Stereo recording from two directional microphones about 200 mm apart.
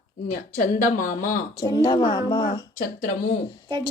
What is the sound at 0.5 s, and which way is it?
Speech, 40° left (ahead or behind).